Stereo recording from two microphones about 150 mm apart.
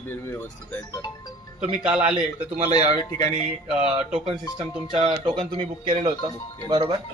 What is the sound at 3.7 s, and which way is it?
Speech, 5° right (ahead or behind).